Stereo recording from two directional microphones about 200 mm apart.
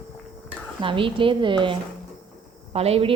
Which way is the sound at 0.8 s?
25° right (ahead or behind).